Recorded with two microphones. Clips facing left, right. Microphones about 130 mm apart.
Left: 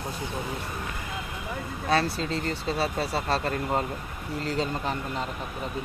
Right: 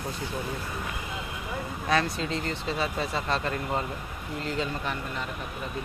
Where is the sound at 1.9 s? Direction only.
35° left (ahead or behind).